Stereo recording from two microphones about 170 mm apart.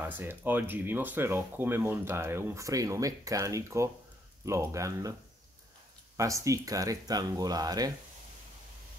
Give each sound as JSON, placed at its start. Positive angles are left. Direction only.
{"t": 0.0, "sound": "speech", "side_deg": -10}
{"t": 6.1, "sound": "speech", "side_deg": -20}